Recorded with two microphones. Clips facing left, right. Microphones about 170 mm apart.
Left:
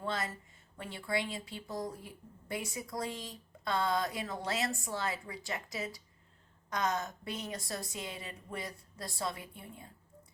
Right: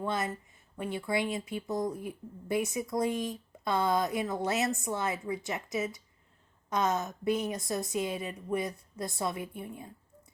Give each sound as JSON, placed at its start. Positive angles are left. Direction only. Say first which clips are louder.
{"t": 0.1, "sound": "speech", "louder": "right 4 dB", "side_deg": -20}